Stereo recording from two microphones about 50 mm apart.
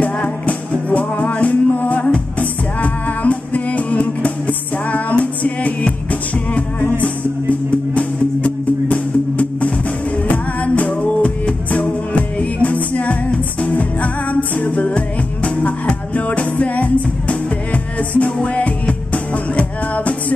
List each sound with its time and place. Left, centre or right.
0.0 s music: left
7.9 s music: left